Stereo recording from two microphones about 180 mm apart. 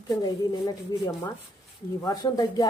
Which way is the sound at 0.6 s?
20° left (ahead or behind).